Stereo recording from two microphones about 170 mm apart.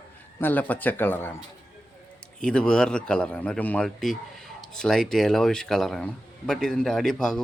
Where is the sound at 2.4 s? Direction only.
5° left (ahead or behind).